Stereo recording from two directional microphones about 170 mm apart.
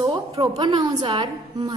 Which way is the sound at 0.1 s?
25° right (ahead or behind).